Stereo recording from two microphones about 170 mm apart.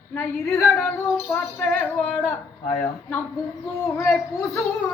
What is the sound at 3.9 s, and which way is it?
Speech, 15° left (ahead or behind).